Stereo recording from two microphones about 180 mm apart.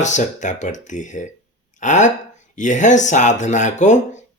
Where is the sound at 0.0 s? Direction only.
40° left (ahead or behind).